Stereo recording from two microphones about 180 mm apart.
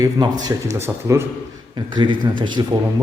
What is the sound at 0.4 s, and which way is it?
A man's voice, 15° right (ahead or behind).